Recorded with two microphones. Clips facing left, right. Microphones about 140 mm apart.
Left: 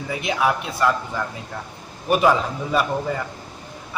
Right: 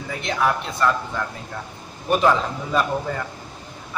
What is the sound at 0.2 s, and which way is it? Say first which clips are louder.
A man's voice: even; 10° left (ahead or behind).